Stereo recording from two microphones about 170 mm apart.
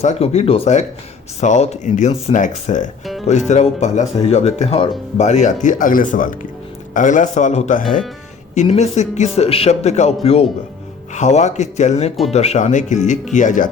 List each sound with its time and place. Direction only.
0.0 s speech: 40° left (ahead or behind)